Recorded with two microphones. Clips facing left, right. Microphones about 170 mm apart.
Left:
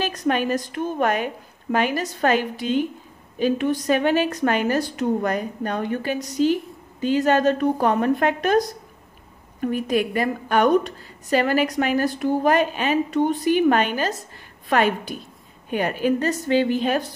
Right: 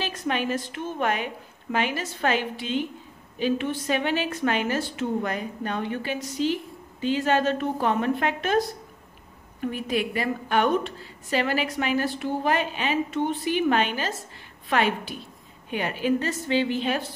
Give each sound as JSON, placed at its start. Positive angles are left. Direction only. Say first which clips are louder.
{"t": 0.0, "sound": "a woman's voice", "louder": "left 5 dB", "side_deg": 40}
{"t": 9.6, "sound": "a woman's voice", "louder": "left 5 dB", "side_deg": 45}